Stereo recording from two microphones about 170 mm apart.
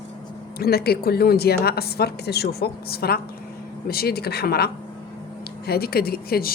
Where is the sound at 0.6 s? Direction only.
70° left (ahead or behind).